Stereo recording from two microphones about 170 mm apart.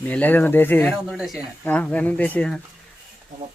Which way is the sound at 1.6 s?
10° left (ahead or behind).